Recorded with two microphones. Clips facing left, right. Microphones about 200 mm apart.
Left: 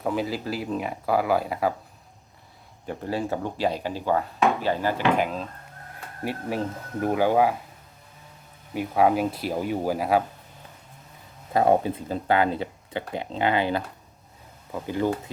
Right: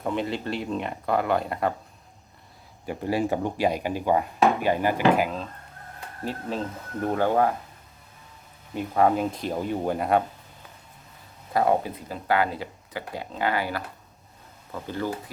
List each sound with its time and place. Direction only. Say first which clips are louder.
0.0 s speech: left 1 dB; 5° left (ahead or behind)
2.8 s speech: right 3 dB; 10° right (ahead or behind)
5.1 s speech: even; centre (ahead or behind)
6.2 s speech: left 2 dB; 10° left (ahead or behind)
8.7 s speech: left 1 dB; 5° left (ahead or behind)
11.5 s speech: left 2 dB; 25° left (ahead or behind)